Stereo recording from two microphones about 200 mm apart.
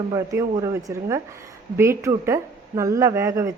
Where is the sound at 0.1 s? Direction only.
15° right (ahead or behind).